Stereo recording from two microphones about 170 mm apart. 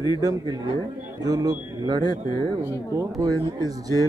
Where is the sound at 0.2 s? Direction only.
20° right (ahead or behind).